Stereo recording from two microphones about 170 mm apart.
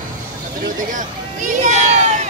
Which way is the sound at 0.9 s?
50° right (ahead or behind).